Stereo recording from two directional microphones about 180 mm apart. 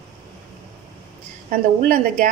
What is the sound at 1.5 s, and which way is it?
Speech, 50° right (ahead or behind).